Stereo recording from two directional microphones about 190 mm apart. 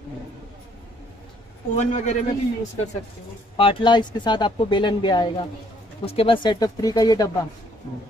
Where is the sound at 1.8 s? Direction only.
40° left (ahead or behind).